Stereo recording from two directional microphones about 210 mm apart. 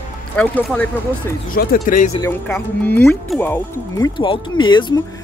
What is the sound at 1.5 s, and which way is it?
Speech, 40° left (ahead or behind).